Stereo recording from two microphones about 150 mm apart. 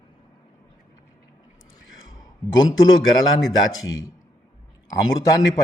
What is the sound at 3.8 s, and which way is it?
A man's voice, 25° left (ahead or behind).